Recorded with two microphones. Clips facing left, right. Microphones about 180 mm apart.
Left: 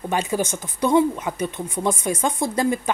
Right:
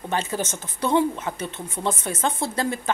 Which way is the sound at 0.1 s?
15° left (ahead or behind).